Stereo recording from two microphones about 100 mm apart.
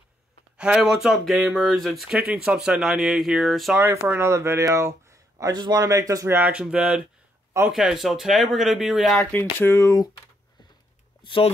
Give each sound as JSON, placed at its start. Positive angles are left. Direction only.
{"t": 0.6, "sound": "speech", "side_deg": -5}
{"t": 3.9, "sound": "speech", "side_deg": -25}
{"t": 6.4, "sound": "speech", "side_deg": -10}
{"t": 9.2, "sound": "speech", "side_deg": 20}
{"t": 11.2, "sound": "speech", "side_deg": 60}